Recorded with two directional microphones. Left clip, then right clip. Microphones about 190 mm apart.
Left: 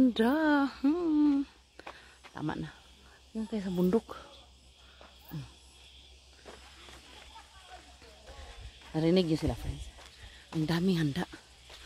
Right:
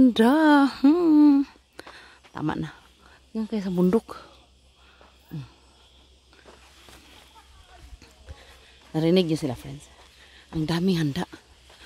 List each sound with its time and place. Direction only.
0.0 s a sound: 45° right (ahead or behind)
2.3 s speech: 55° right (ahead or behind)
8.9 s speech: 55° right (ahead or behind)
10.6 s speech: 50° right (ahead or behind)